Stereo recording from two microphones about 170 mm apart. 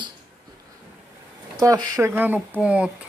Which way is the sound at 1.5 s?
20° right (ahead or behind).